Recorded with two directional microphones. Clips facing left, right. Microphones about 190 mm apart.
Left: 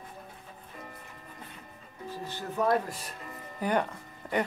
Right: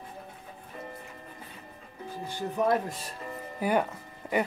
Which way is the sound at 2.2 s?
15° right (ahead or behind).